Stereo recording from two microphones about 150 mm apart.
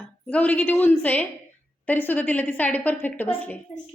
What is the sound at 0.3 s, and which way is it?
A woman's voice, 10° left (ahead or behind).